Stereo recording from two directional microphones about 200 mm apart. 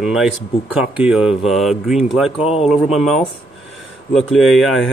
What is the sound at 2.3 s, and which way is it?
Speech, 30° left (ahead or behind).